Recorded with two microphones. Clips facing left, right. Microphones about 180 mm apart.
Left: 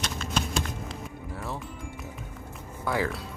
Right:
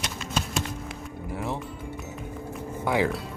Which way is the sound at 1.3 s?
20° right (ahead or behind).